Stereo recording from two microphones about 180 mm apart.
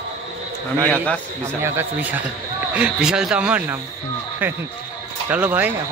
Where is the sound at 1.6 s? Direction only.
10° right (ahead or behind).